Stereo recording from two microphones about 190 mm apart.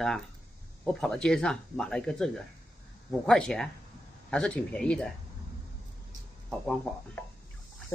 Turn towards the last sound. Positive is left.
turn(degrees=5)  # may be behind; listen again after turning